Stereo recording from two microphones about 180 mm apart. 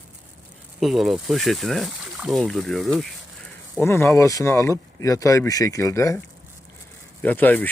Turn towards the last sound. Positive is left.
turn(degrees=10)  # may be behind; listen again after turning